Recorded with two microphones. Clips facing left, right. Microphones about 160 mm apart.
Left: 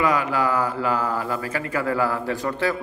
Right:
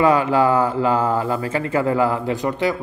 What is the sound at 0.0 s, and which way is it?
A man's voice, 30° right (ahead or behind).